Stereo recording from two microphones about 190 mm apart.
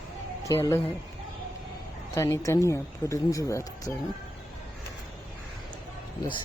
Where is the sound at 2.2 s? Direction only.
15° left (ahead or behind).